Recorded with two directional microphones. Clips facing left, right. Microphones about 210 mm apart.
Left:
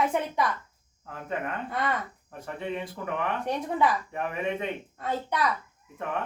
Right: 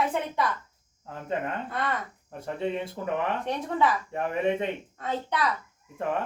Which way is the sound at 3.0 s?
20° right (ahead or behind).